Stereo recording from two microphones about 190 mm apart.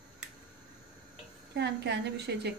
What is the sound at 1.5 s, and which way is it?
A woman's voice, 60° right (ahead or behind).